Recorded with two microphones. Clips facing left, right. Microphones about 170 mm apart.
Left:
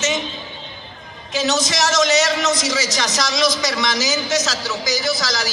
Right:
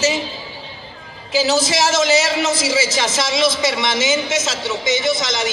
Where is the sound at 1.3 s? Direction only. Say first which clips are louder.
Right 3 dB; 30° right (ahead or behind).